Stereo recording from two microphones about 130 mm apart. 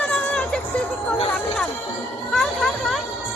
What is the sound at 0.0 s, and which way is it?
Music, 10° left (ahead or behind).